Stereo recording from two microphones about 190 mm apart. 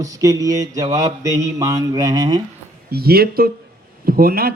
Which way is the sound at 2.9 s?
55° right (ahead or behind).